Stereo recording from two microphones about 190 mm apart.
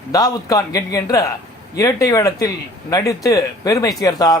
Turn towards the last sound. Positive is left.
turn(degrees=20)  # may be behind; listen again after turning